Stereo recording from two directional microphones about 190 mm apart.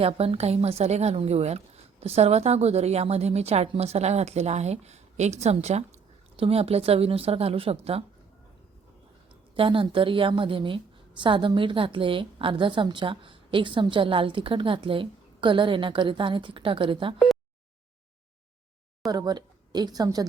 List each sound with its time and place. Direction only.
0.0 s a woman's voice: 30° right (ahead or behind)
9.6 s a woman's voice: 25° right (ahead or behind)
19.0 s speech: 20° right (ahead or behind)